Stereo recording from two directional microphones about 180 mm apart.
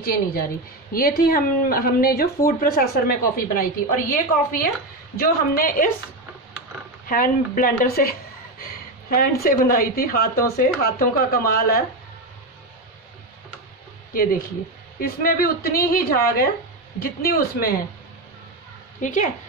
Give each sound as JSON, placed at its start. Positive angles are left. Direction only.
{"t": 0.0, "sound": "speech", "side_deg": 55}
{"t": 7.1, "sound": "speech", "side_deg": 50}
{"t": 15.0, "sound": "speech", "side_deg": 55}
{"t": 18.9, "sound": "speech", "side_deg": 45}